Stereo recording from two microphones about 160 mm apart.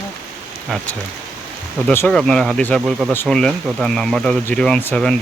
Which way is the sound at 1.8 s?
15° left (ahead or behind).